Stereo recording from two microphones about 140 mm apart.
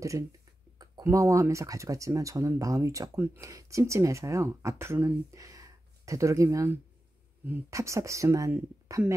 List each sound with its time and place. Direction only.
1.0 s speech: 20° right (ahead or behind)